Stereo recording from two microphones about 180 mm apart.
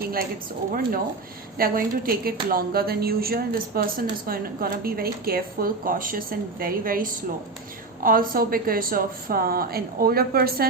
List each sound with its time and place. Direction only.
0.0 s a woman's voice: 55° right (ahead or behind)
1.5 s a woman's voice: 55° right (ahead or behind)